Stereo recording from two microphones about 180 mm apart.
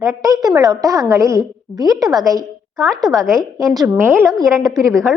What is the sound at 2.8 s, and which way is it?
Speech, centre (ahead or behind).